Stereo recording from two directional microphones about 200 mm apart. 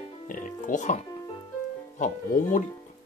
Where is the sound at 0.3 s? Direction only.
40° left (ahead or behind).